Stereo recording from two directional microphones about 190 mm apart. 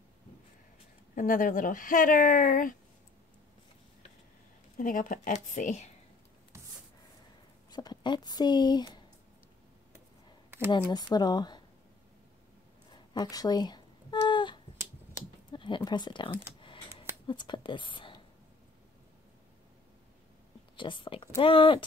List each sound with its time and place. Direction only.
1.1 s speech: 45° left (ahead or behind)
4.7 s speech: 45° left (ahead or behind)
7.7 s speech: 20° left (ahead or behind)
10.8 s speech: 20° left (ahead or behind)
12.9 s a sound: 20° left (ahead or behind)
15.5 s a woman's voice: 25° left (ahead or behind)
20.7 s speech: 25° left (ahead or behind)